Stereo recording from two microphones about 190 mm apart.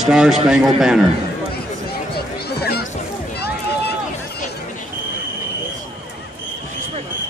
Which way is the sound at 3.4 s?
60° left (ahead or behind).